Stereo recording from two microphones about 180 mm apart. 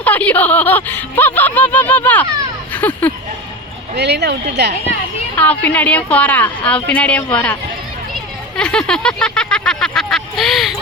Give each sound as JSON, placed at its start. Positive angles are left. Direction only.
{"t": 0.0, "sound": "speech", "side_deg": 10}
{"t": 3.9, "sound": "speech", "side_deg": -70}
{"t": 5.4, "sound": "speech", "side_deg": 10}